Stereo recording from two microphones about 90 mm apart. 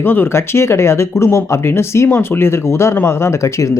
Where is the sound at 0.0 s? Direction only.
25° left (ahead or behind).